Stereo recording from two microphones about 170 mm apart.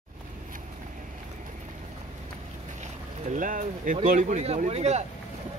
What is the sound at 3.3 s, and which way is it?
Speech, 50° right (ahead or behind).